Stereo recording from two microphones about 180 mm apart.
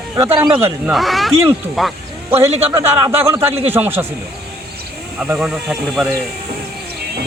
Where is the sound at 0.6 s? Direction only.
5° right (ahead or behind).